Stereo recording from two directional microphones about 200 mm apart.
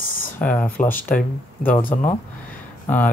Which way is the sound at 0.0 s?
45° left (ahead or behind).